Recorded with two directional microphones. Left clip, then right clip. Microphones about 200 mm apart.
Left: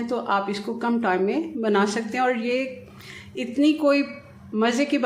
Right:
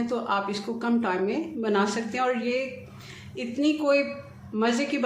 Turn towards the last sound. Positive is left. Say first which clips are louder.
# left 3 dB
turn(degrees=25)  # may be behind; listen again after turning